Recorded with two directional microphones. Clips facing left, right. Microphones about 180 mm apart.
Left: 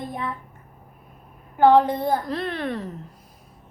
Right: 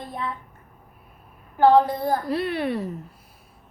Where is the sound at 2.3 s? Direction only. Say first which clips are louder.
Right 3 dB; 10° right (ahead or behind).